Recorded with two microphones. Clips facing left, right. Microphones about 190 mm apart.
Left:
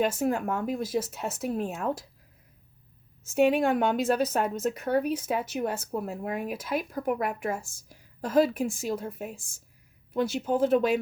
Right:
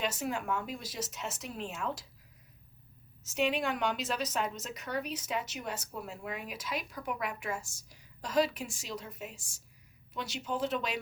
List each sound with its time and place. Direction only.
0.0 s speech: 50° left (ahead or behind)
3.2 s speech: 50° left (ahead or behind)